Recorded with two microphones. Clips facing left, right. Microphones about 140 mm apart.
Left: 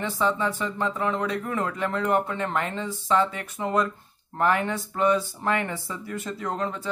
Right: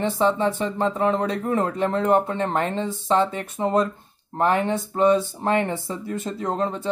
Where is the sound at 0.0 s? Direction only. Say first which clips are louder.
Right 5 dB; 25° right (ahead or behind).